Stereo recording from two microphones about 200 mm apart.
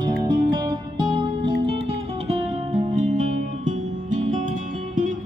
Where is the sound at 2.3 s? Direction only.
35° right (ahead or behind).